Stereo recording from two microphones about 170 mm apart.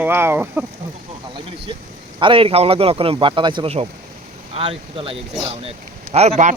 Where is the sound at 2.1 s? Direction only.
30° right (ahead or behind).